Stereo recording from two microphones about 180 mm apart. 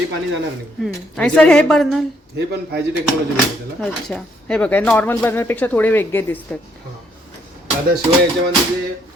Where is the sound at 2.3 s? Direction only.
65° right (ahead or behind).